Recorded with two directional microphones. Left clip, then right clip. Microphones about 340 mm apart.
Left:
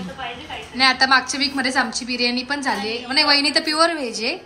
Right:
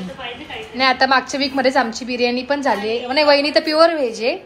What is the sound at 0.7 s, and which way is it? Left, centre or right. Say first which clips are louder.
A woman's voice: right 1 dB; centre.